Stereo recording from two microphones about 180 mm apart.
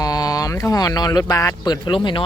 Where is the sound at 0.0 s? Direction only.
20° left (ahead or behind).